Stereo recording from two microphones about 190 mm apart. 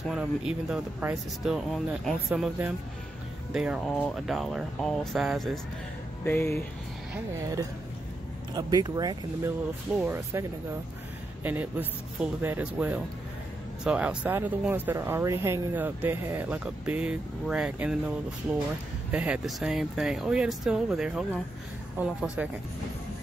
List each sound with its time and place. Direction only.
0.1 s speech: 5° right (ahead or behind)
6.2 s speech: 10° left (ahead or behind)
8.5 s speech: 20° right (ahead or behind)
11.4 s speech: 10° right (ahead or behind)
19.1 s speech: 5° right (ahead or behind)